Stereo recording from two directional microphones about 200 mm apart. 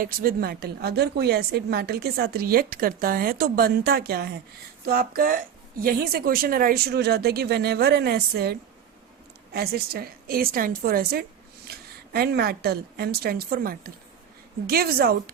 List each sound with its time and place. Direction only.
0.0 s a woman's voice: 45° right (ahead or behind)